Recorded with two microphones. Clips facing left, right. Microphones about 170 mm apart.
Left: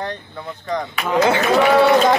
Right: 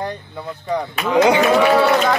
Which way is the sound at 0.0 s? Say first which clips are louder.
Right 1 dB; 10° right (ahead or behind).